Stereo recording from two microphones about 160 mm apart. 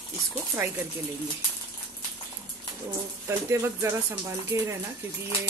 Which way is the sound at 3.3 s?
15° right (ahead or behind).